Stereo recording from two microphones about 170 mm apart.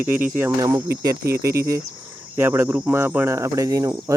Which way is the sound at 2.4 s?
10° right (ahead or behind).